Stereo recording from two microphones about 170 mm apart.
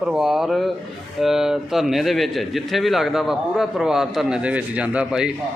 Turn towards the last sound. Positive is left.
turn(degrees=-5)  # may be behind; listen again after turning